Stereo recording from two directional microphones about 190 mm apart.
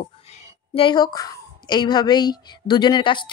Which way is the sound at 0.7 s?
25° left (ahead or behind).